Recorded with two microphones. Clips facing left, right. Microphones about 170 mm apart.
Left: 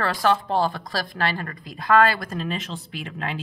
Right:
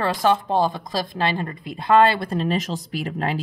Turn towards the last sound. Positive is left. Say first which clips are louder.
# right 6 dB
turn(degrees=-35)  # may be behind; listen again after turning